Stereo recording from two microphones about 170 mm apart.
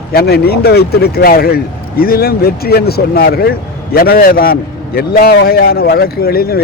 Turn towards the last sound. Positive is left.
turn(degrees=65)  # may be behind; listen again after turning